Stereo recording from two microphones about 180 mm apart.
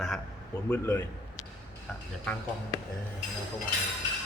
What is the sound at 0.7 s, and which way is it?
Speech, 10° left (ahead or behind).